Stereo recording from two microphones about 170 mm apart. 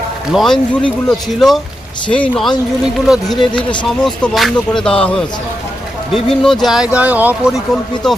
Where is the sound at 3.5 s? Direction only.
30° left (ahead or behind).